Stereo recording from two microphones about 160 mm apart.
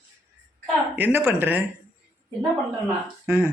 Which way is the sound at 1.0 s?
10° right (ahead or behind).